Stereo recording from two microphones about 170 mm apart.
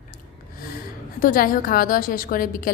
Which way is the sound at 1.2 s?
55° left (ahead or behind).